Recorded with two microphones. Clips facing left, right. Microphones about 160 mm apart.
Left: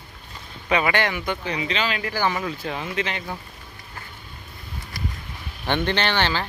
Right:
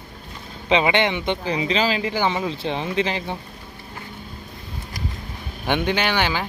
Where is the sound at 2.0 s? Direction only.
20° right (ahead or behind).